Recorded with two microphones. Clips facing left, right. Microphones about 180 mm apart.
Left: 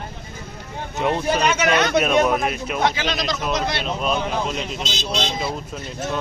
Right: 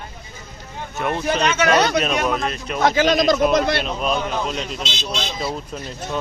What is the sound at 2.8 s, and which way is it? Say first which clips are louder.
Speech: right 7 dB; 45° right (ahead or behind).